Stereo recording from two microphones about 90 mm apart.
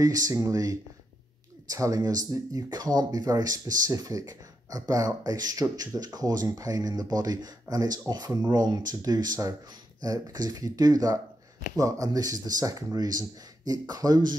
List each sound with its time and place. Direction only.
0.0 s speech: 45° right (ahead or behind)